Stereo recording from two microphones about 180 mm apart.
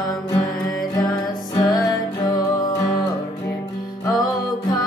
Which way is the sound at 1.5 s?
20° left (ahead or behind).